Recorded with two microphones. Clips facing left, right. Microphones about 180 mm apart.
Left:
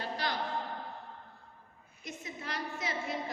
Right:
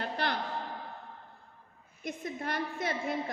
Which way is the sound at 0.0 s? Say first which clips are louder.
Right 3 dB; 60° right (ahead or behind).